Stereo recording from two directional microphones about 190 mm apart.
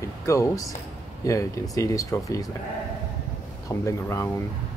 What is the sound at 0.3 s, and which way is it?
Speech, 15° left (ahead or behind).